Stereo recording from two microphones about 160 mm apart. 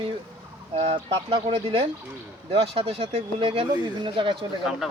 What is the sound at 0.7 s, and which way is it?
Speech, 40° right (ahead or behind).